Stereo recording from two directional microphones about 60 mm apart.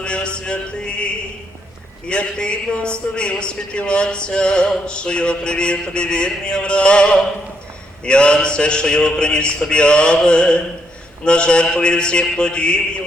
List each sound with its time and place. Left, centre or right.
0.0 s music: centre
2.0 s speech: centre